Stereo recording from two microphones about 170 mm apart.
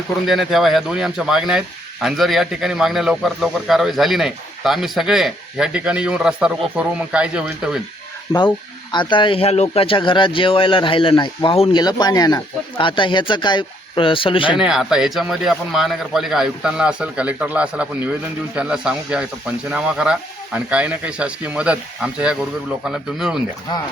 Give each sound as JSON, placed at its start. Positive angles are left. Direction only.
{"t": 0.3, "sound": "speech", "side_deg": 0}
{"t": 8.9, "sound": "speech", "side_deg": 30}
{"t": 14.5, "sound": "speech", "side_deg": -5}